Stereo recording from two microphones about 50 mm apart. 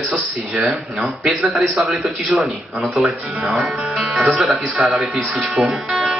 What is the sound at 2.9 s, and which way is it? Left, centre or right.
Speech, centre.